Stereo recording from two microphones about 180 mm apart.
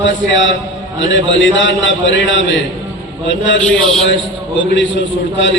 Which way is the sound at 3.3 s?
90° left.